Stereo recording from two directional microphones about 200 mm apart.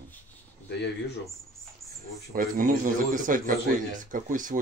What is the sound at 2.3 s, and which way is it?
Speech, 45° right (ahead or behind).